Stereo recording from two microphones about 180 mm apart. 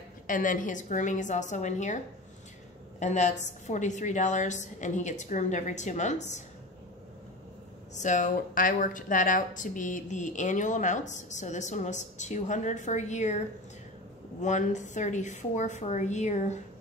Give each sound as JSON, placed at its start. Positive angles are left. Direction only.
{"t": 0.3, "sound": "a woman's voice", "side_deg": 45}
{"t": 3.0, "sound": "a woman's voice", "side_deg": 40}
{"t": 7.9, "sound": "a woman's voice", "side_deg": 45}
{"t": 14.4, "sound": "a woman's voice", "side_deg": 40}